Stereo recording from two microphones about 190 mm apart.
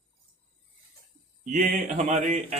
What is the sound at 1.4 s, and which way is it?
Speech, 45° right (ahead or behind).